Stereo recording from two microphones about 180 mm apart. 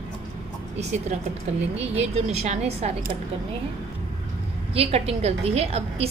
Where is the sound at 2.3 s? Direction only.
40° right (ahead or behind).